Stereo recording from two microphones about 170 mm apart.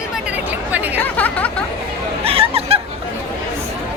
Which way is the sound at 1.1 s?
10° left (ahead or behind).